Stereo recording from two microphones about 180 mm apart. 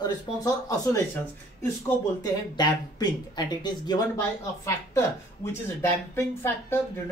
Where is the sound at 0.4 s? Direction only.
20° left (ahead or behind).